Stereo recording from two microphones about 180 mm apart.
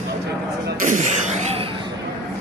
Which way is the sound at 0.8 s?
45° right (ahead or behind).